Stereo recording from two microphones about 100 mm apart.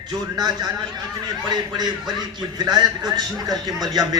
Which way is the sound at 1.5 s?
45° right (ahead or behind).